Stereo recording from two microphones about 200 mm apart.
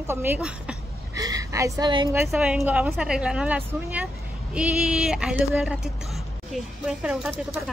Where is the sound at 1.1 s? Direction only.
15° right (ahead or behind).